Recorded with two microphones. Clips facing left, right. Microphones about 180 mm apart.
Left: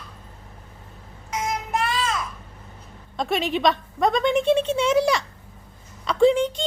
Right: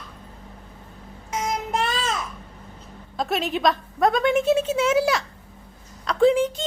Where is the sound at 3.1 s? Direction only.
Centre (ahead or behind).